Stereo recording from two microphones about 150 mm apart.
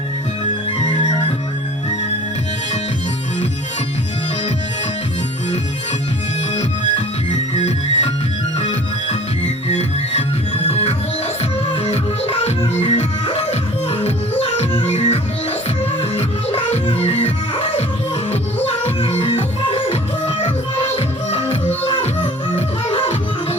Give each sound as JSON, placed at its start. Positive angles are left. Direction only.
{"t": 0.8, "sound": "music", "side_deg": 45}
{"t": 7.3, "sound": "music", "side_deg": 50}
{"t": 11.9, "sound": "music", "side_deg": 40}